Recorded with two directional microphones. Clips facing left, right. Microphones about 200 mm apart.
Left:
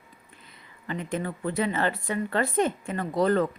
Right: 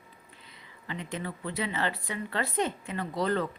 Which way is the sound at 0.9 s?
45° left (ahead or behind).